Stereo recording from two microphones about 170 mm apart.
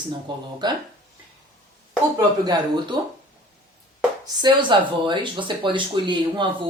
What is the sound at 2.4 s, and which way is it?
Speech, 25° right (ahead or behind).